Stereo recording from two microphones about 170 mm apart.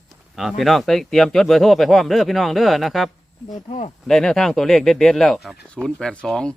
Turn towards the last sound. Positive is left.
turn(degrees=5)  # may be behind; listen again after turning